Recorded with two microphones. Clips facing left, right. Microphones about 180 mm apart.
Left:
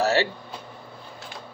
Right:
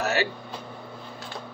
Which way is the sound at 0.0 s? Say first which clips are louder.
Left 4 dB; 30° left (ahead or behind).